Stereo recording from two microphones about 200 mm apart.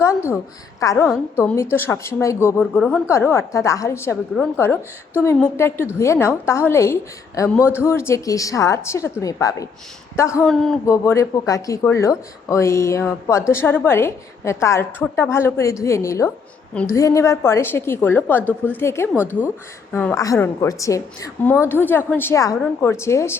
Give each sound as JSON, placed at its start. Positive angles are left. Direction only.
{"t": 0.0, "sound": "a woman's voice", "side_deg": 15}
{"t": 10.4, "sound": "speech", "side_deg": 0}
{"t": 10.8, "sound": "a woman's voice", "side_deg": 15}
{"t": 19.1, "sound": "speech", "side_deg": -10}
{"t": 19.9, "sound": "a woman's voice", "side_deg": 10}